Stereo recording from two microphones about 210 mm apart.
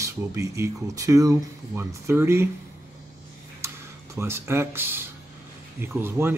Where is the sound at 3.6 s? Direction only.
15° right (ahead or behind).